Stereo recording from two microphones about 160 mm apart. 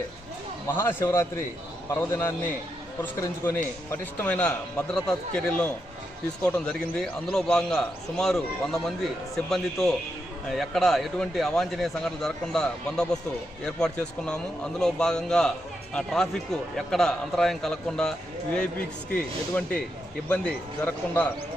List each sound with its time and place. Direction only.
0.7 s a man's voice: 15° left (ahead or behind)
19.1 s a man's voice: 10° left (ahead or behind)